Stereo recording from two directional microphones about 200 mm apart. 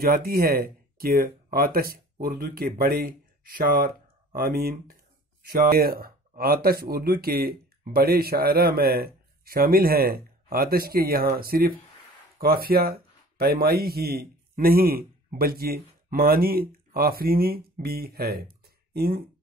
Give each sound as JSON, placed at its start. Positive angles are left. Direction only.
{"t": 0.0, "sound": "speech", "side_deg": -50}